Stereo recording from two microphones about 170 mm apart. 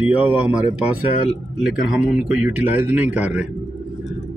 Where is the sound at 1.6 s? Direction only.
5° right (ahead or behind).